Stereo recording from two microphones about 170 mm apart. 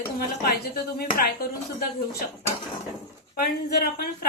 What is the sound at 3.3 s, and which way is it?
Speech, 65° left (ahead or behind).